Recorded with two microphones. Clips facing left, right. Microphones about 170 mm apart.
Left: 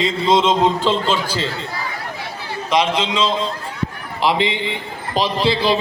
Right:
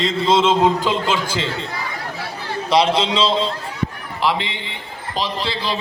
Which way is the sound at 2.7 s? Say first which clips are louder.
Right 2 dB; 35° right (ahead or behind).